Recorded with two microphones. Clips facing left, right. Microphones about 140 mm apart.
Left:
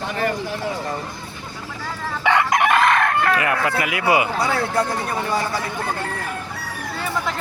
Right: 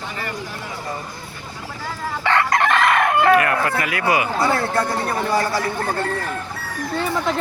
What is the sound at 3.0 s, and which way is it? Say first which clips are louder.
Chicken: right 4 dB; 15° right (ahead or behind).